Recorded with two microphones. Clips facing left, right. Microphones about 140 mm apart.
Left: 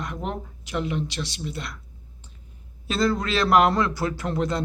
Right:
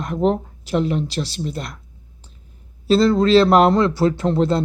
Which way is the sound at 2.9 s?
30° right (ahead or behind).